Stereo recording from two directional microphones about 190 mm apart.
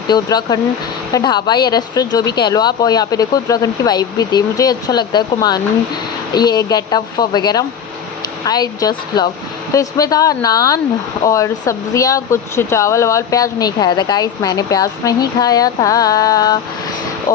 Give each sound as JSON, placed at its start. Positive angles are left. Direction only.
{"t": 0.1, "sound": "speech", "side_deg": 20}